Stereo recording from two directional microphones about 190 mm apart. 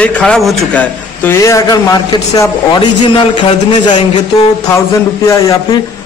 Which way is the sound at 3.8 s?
20° left (ahead or behind).